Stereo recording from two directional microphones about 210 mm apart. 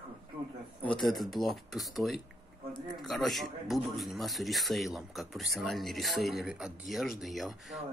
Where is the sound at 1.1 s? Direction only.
Centre (ahead or behind).